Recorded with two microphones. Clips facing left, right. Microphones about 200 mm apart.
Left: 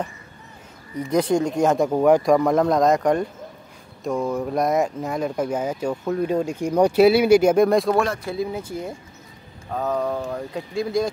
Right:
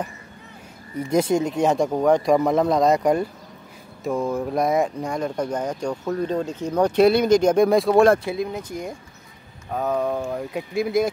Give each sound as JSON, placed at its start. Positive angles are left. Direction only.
{"t": 1.4, "sound": "speech", "side_deg": 0}
{"t": 9.7, "sound": "speech", "side_deg": -10}